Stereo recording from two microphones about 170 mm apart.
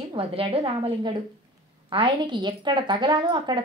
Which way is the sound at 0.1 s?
35° right (ahead or behind).